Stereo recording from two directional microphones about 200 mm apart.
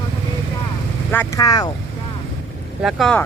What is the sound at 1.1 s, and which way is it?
Speech, 10° left (ahead or behind).